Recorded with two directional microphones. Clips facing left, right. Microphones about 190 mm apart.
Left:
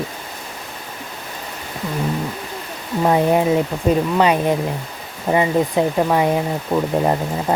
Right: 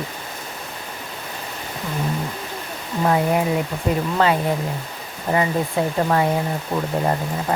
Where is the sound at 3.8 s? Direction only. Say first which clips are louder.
Left 3 dB; 20° left (ahead or behind).